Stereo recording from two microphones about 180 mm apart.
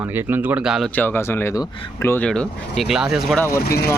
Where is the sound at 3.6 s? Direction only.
60° left (ahead or behind).